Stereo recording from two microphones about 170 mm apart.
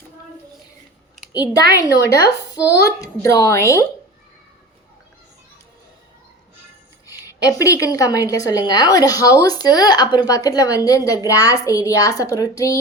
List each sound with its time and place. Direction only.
1.3 s a woman's voice: 25° left (ahead or behind)
7.3 s a woman's voice: 20° left (ahead or behind)